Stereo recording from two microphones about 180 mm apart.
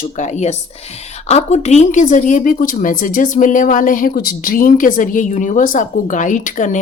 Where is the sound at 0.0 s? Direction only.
40° left (ahead or behind).